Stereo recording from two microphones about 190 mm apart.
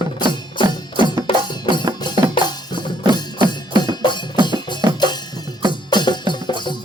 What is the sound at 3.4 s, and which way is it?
Music, 25° right (ahead or behind).